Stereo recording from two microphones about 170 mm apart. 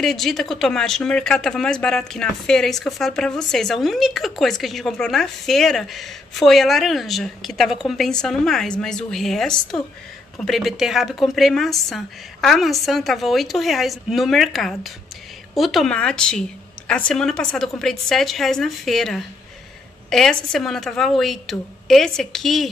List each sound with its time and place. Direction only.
0.0 s speech: centre (ahead or behind)